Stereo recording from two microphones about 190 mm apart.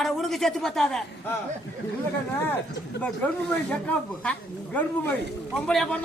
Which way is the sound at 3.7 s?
5° left (ahead or behind).